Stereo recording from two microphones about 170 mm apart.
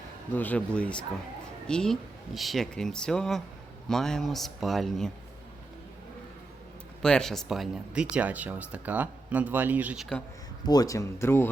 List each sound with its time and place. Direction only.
0.3 s speech: 10° left (ahead or behind)
7.0 s speech: 5° left (ahead or behind)
10.7 s speech: 20° left (ahead or behind)